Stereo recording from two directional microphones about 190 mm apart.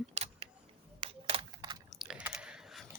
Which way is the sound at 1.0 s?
30° right (ahead or behind).